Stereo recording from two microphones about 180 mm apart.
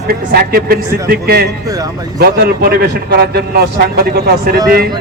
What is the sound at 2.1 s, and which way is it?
A man's voice, 60° right (ahead or behind).